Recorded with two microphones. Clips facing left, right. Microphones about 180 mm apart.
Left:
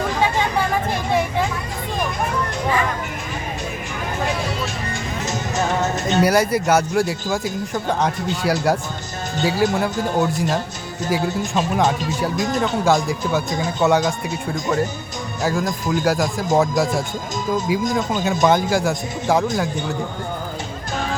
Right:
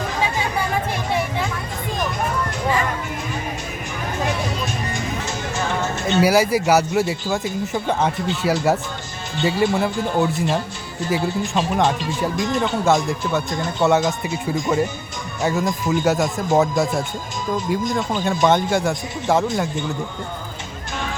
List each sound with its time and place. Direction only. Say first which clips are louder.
6.1 s speech: right 1 dB; 5° right (ahead or behind)